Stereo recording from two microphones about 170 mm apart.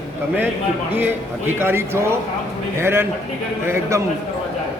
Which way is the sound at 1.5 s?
15° right (ahead or behind).